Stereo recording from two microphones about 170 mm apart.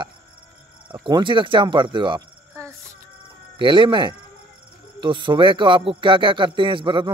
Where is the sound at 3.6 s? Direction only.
30° right (ahead or behind).